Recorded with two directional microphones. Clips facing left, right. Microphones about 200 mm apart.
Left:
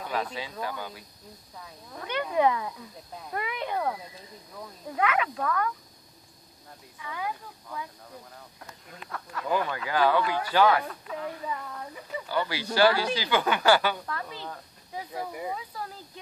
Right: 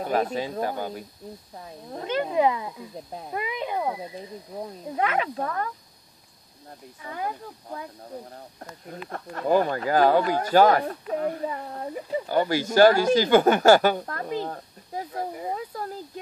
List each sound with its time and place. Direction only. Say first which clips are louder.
0.0 s speech: right 7 dB; 45° right (ahead or behind)
2.0 s speech: right 3 dB; 30° right (ahead or behind)
4.6 s speech: right 2 dB; 30° right (ahead or behind)
7.0 s speech: right 3 dB; 40° right (ahead or behind)